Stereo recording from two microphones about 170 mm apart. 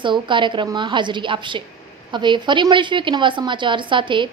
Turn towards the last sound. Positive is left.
turn(degrees=-30)  # may be behind; listen again after turning